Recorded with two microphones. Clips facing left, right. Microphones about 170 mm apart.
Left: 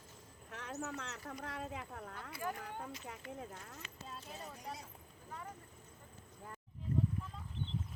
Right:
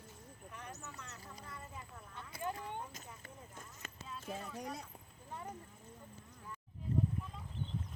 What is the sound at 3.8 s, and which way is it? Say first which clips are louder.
Clip-clop: right 3 dB; 45° right (ahead or behind).